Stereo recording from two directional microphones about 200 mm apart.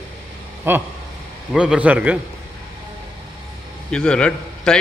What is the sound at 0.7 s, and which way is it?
A man's voice, 10° right (ahead or behind).